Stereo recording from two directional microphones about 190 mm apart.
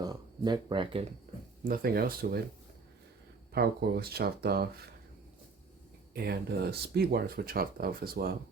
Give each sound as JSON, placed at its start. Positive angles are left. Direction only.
{"t": 0.0, "sound": "speech", "side_deg": -20}
{"t": 1.6, "sound": "speech", "side_deg": -50}
{"t": 3.5, "sound": "speech", "side_deg": -55}
{"t": 6.1, "sound": "speech", "side_deg": -60}